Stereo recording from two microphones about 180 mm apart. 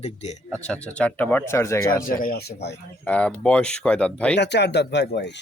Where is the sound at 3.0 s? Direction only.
5° left (ahead or behind).